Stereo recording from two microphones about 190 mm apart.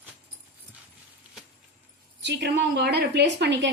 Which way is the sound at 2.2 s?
65° right (ahead or behind).